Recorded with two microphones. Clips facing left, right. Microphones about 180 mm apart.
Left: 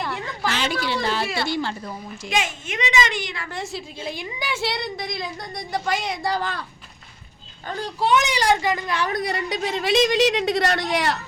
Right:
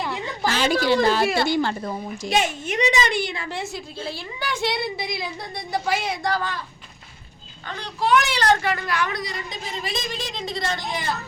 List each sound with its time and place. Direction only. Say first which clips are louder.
0.4 s a woman's voice: right 5 dB; 40° right (ahead or behind)
4.2 s a woman's voice: right 1 dB; 10° left (ahead or behind); by 6.1 s 5° right (ahead or behind)
8.1 s speech: right 1 dB; 15° left (ahead or behind)
9.1 s a woman's voice: left 6 dB; 65° left (ahead or behind)